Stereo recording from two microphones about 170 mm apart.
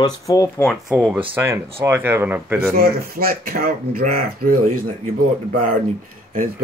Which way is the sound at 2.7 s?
60° right (ahead or behind).